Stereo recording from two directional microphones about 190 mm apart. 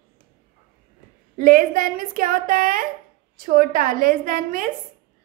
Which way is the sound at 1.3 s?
45° right (ahead or behind).